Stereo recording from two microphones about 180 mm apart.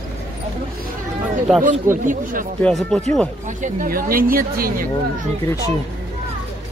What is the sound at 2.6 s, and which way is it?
Speech, centre (ahead or behind).